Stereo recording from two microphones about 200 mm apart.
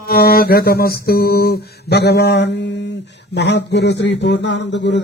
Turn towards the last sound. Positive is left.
turn(degrees=60)  # may be behind; listen again after turning